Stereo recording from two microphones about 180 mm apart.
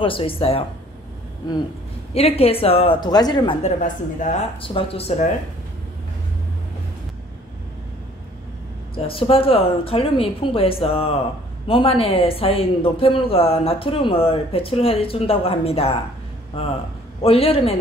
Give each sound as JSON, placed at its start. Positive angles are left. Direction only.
{"t": 0.0, "sound": "a man's voice", "side_deg": 30}
{"t": 2.1, "sound": "a man's voice", "side_deg": 35}
{"t": 3.6, "sound": "a woman's voice", "side_deg": 45}
{"t": 4.6, "sound": "a man's voice", "side_deg": 30}
{"t": 8.9, "sound": "a man's voice", "side_deg": 30}
{"t": 17.2, "sound": "a man's voice", "side_deg": 30}